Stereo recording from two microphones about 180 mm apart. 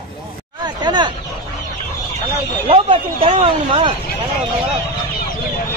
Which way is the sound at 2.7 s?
30° right (ahead or behind).